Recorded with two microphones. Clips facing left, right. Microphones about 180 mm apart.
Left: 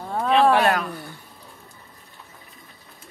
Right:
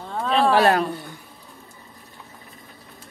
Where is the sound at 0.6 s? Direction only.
35° right (ahead or behind).